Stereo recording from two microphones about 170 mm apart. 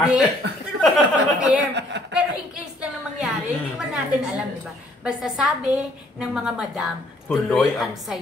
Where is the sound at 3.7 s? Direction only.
5° right (ahead or behind).